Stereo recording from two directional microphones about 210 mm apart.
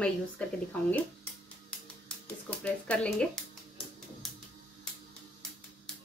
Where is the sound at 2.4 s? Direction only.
5° left (ahead or behind).